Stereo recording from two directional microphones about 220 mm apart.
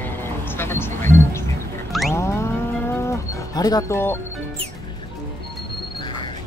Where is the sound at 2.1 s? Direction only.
10° left (ahead or behind).